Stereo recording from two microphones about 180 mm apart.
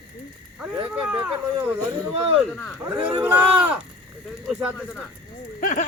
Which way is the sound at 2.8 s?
10° right (ahead or behind).